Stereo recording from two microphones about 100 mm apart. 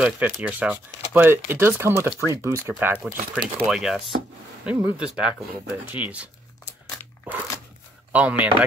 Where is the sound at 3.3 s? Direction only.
5° right (ahead or behind).